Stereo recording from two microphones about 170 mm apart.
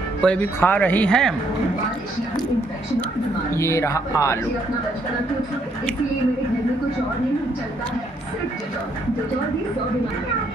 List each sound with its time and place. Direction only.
0.2 s speech: 10° left (ahead or behind)
3.5 s speech: 15° left (ahead or behind)